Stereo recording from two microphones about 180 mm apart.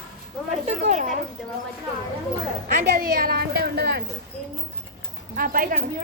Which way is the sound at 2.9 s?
55° right (ahead or behind).